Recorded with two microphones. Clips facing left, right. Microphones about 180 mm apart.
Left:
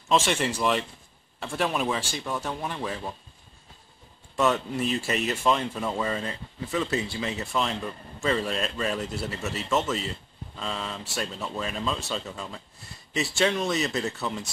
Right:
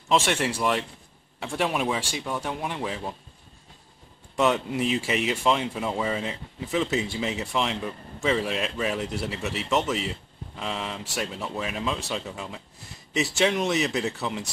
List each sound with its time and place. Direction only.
0.3 s speech: 10° right (ahead or behind)
4.4 s speech: 15° right (ahead or behind)